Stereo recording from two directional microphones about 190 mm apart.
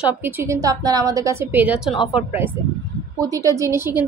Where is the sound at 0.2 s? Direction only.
10° right (ahead or behind).